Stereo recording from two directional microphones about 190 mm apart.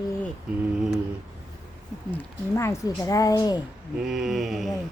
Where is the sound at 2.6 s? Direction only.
15° left (ahead or behind).